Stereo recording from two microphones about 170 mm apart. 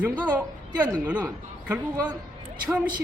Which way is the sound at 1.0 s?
10° right (ahead or behind).